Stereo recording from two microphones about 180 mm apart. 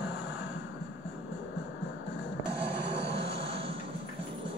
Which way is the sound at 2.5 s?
30° right (ahead or behind).